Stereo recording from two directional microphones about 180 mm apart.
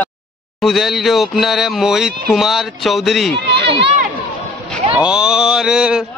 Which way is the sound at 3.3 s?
70° right (ahead or behind).